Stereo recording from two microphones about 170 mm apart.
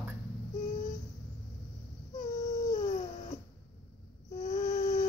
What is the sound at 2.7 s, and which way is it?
Dog, 45° left (ahead or behind).